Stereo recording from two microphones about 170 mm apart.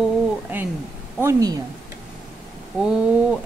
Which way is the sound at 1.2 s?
20° right (ahead or behind).